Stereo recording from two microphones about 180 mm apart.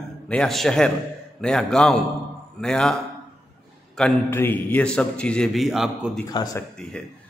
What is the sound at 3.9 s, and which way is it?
A man's voice, 10° left (ahead or behind).